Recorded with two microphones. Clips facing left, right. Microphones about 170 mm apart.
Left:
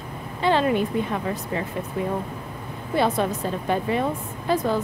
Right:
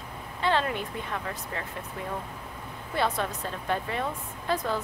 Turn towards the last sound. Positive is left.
turn(degrees=5)  # may be behind; listen again after turning